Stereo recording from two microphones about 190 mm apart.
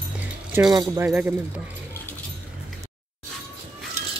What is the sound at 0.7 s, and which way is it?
Speech, 20° right (ahead or behind).